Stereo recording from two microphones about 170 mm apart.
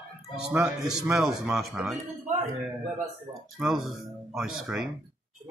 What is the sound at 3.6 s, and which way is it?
Speech, centre (ahead or behind).